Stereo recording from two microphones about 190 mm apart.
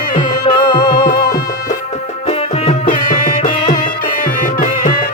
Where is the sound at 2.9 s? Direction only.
50° left (ahead or behind).